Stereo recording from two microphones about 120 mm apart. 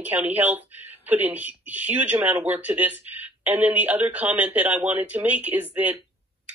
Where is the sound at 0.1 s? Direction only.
15° right (ahead or behind).